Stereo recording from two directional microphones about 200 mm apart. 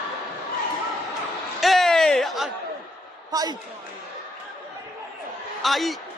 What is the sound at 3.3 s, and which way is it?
Speech, 20° right (ahead or behind).